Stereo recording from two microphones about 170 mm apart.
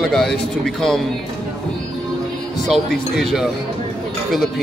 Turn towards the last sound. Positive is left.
turn(degrees=0)  # may be behind; listen again after turning